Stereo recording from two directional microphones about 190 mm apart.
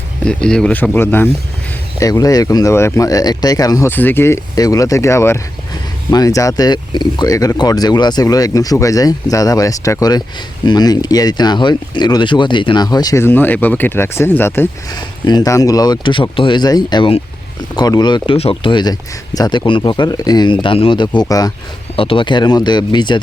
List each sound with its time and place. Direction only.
0.3 s speech: 5° left (ahead or behind); by 23.2 s 25° left (ahead or behind)